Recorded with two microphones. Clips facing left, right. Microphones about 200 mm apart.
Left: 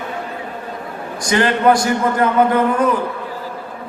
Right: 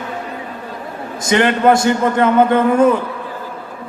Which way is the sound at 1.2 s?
25° right (ahead or behind).